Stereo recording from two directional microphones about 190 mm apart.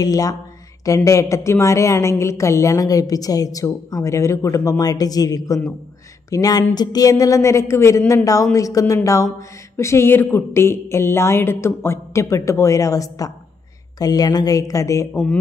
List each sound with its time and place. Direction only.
0.0 s a woman's voice: 20° left (ahead or behind)